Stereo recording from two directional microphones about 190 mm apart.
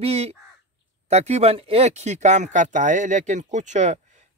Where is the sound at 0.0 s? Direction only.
30° right (ahead or behind).